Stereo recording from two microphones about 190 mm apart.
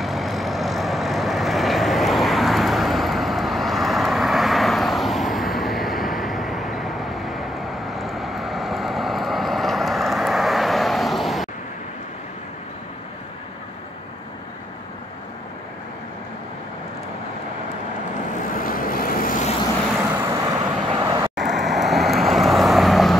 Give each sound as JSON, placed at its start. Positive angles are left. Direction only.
{"t": 0.0, "sound": "vehicle", "side_deg": 0}
{"t": 18.5, "sound": "vehicle", "side_deg": 50}
{"t": 20.2, "sound": "vehicle", "side_deg": -15}
{"t": 21.4, "sound": "vehicle", "side_deg": 0}